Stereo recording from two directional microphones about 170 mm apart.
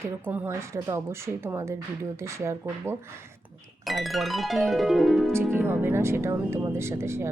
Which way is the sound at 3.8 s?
Centre (ahead or behind).